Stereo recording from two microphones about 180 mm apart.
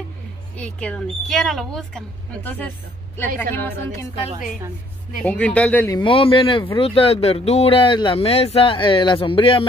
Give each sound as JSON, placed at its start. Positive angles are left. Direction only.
{"t": 0.6, "sound": "a woman's voice", "side_deg": 5}
{"t": 5.2, "sound": "speech", "side_deg": 5}
{"t": 5.9, "sound": "speech", "side_deg": 30}